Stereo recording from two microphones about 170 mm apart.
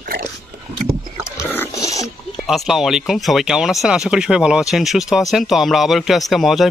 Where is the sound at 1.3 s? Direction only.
15° left (ahead or behind).